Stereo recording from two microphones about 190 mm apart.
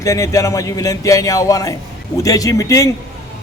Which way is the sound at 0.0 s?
15° left (ahead or behind).